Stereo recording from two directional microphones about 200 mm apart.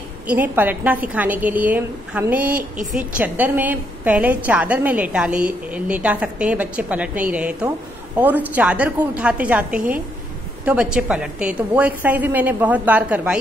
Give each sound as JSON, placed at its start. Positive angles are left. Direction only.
{"t": 0.3, "sound": "a woman's voice", "side_deg": -10}